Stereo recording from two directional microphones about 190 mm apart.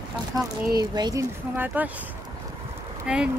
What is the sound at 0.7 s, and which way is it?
Speech, 20° right (ahead or behind).